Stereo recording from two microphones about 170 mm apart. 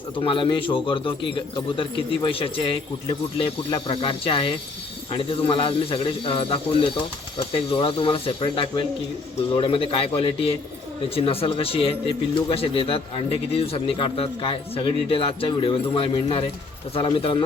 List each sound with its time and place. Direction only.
0.2 s speech: 30° left (ahead or behind)